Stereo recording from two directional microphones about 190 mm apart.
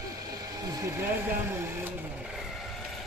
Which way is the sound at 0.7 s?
15° right (ahead or behind).